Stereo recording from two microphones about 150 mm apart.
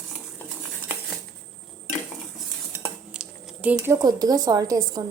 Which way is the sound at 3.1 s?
5° right (ahead or behind).